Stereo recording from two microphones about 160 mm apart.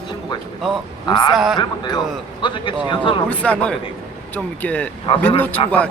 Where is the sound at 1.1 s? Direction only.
25° left (ahead or behind).